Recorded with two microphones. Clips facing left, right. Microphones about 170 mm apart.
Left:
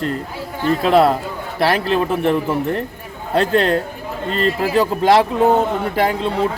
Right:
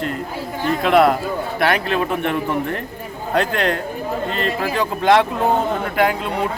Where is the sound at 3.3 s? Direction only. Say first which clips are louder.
Left 4 dB; 30° left (ahead or behind).